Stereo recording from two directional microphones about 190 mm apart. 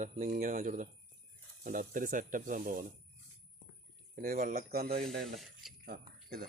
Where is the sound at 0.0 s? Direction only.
40° right (ahead or behind).